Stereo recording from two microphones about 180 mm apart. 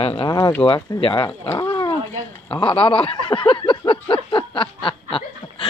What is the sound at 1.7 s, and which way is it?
Dog, 25° left (ahead or behind).